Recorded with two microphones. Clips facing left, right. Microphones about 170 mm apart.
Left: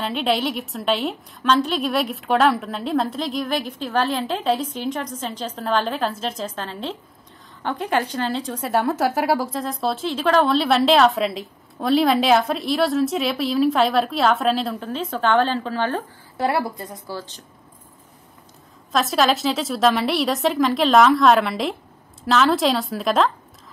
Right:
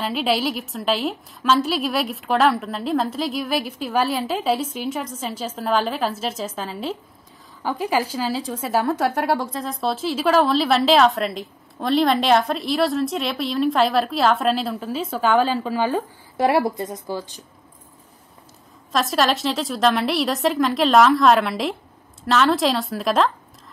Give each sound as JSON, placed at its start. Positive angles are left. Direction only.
{"t": 0.0, "sound": "a woman's voice", "side_deg": -5}
{"t": 16.3, "sound": "a woman's voice", "side_deg": -20}
{"t": 18.9, "sound": "a woman's voice", "side_deg": 0}